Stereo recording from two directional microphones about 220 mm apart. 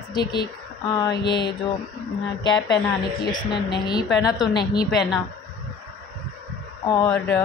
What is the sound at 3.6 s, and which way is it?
A woman's voice, 20° left (ahead or behind).